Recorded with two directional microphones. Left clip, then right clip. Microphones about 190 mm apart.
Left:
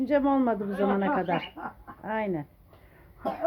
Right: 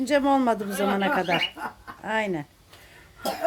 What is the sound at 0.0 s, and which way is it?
Speech, 10° right (ahead or behind).